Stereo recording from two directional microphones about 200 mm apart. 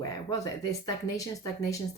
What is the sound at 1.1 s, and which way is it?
Speech, 15° left (ahead or behind).